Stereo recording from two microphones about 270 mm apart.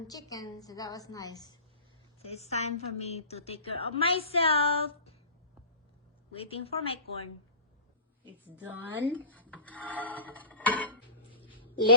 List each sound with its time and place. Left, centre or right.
0.1 s a woman's voice: centre
6.3 s a woman's voice: left
8.4 s a woman's voice: centre
9.1 s dishes: centre
9.6 s music: centre